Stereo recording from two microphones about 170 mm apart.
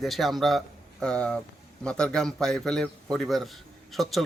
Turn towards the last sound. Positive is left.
turn(degrees=0)  # may be behind; listen again after turning